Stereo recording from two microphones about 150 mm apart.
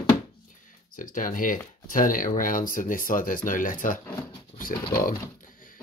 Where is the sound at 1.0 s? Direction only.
65° left (ahead or behind).